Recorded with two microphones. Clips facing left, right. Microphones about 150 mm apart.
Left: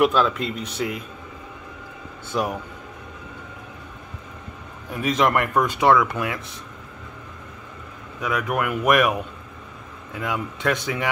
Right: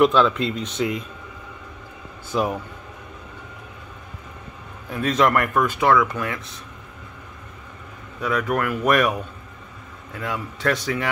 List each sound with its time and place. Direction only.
0.0 s speech: 5° left (ahead or behind)
2.3 s speech: centre (ahead or behind)
4.9 s speech: 15° left (ahead or behind)
8.2 s speech: 10° left (ahead or behind)
10.2 s speech: 15° left (ahead or behind)